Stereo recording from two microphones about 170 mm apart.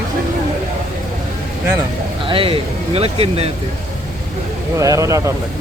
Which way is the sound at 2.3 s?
30° right (ahead or behind).